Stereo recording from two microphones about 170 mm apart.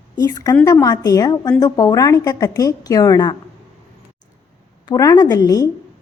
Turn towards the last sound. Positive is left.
turn(degrees=20)  # may be behind; listen again after turning